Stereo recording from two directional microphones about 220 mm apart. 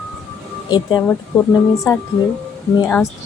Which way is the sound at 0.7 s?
20° left (ahead or behind).